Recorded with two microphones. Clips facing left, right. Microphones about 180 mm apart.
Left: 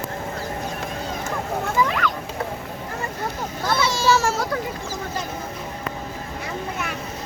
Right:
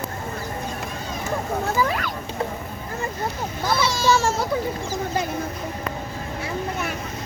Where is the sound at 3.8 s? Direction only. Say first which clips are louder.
Left 1 dB; 5° left (ahead or behind).